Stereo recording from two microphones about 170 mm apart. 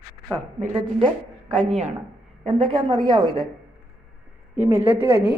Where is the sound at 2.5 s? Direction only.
30° right (ahead or behind).